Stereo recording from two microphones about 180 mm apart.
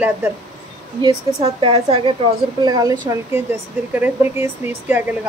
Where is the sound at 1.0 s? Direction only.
25° right (ahead or behind).